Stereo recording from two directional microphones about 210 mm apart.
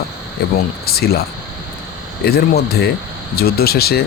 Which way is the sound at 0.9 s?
50° left (ahead or behind).